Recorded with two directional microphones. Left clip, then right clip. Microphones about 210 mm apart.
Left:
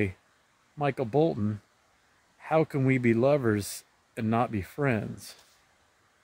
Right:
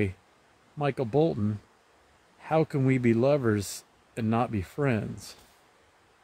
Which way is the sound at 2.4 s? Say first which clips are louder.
Even; 15° left (ahead or behind).